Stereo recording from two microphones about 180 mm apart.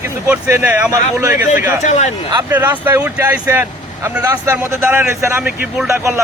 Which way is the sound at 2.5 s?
10° right (ahead or behind).